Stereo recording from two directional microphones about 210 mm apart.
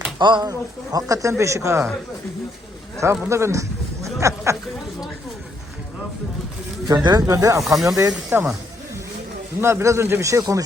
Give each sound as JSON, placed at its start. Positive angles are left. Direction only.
{"t": 0.2, "sound": "a man's voice", "side_deg": -20}
{"t": 3.0, "sound": "a man's voice", "side_deg": -15}
{"t": 6.8, "sound": "a man's voice", "side_deg": -20}
{"t": 7.6, "sound": "speech", "side_deg": 0}
{"t": 7.9, "sound": "a man's voice", "side_deg": -15}
{"t": 9.6, "sound": "a man's voice", "side_deg": -10}